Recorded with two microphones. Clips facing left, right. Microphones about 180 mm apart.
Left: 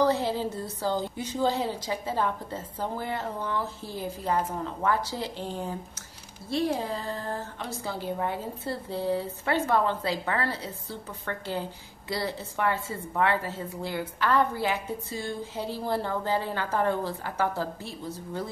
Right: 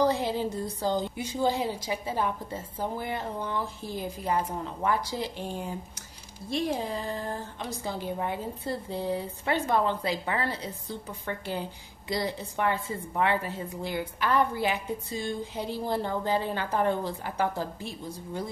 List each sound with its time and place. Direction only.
0.0 s a woman's voice: 15° right (ahead or behind)